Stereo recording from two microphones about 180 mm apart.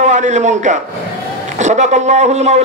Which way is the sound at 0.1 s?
40° right (ahead or behind).